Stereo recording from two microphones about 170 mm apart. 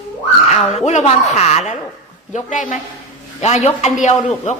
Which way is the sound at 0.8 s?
45° left (ahead or behind).